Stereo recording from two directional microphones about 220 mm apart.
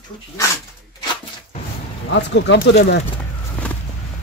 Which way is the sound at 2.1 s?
50° left (ahead or behind).